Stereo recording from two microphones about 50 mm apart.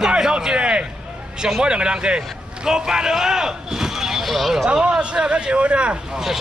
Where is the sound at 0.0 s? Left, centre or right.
Centre.